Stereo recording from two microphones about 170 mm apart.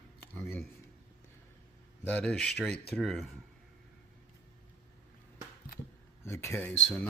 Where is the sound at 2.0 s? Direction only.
5° left (ahead or behind).